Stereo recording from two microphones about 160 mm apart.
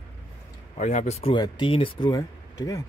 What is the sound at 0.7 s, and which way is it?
Speech, 45° left (ahead or behind).